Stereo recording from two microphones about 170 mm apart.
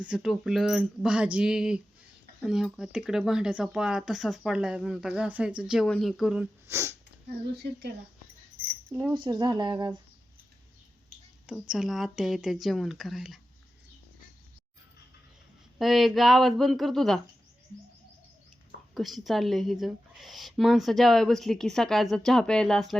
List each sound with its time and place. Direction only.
0.0 s speech: 5° right (ahead or behind)
7.3 s speech: 70° right (ahead or behind)
8.9 s speech: 10° right (ahead or behind)
9.1 s speech: 25° right (ahead or behind)
11.7 s speech: centre (ahead or behind)
15.8 s speech: centre (ahead or behind)
18.9 s speech: centre (ahead or behind)